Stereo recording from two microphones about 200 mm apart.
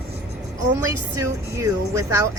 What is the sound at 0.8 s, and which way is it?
A woman's voice, 15° right (ahead or behind).